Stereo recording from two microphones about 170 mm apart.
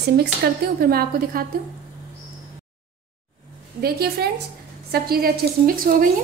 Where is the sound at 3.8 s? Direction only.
65° right (ahead or behind).